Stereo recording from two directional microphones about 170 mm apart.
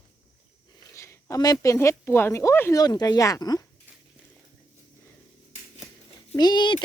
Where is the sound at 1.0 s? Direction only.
15° left (ahead or behind).